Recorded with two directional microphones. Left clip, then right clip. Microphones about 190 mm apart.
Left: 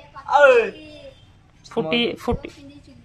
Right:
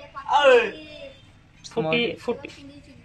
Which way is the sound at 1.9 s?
25° left (ahead or behind).